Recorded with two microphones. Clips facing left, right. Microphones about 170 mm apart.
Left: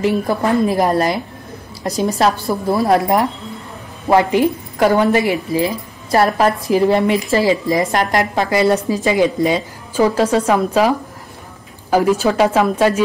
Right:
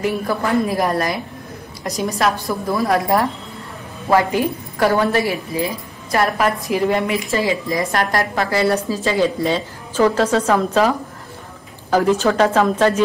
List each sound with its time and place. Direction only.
0.0 s a woman's voice: 20° left (ahead or behind)
2.1 s a woman's voice: 30° left (ahead or behind)
6.1 s a woman's voice: 30° left (ahead or behind)
7.9 s a woman's voice: 20° left (ahead or behind)